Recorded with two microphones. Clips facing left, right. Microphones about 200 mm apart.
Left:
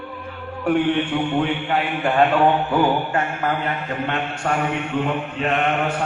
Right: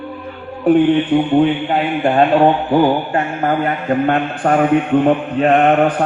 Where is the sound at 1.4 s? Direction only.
30° right (ahead or behind); by 5.9 s 50° right (ahead or behind).